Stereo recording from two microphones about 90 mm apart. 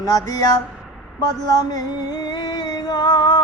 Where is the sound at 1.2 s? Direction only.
45° left (ahead or behind).